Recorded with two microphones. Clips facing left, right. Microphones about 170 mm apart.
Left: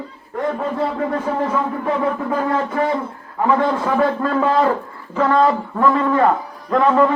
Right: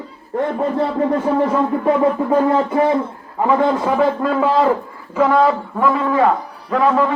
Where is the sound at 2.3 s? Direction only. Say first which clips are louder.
Right 5 dB; 25° right (ahead or behind).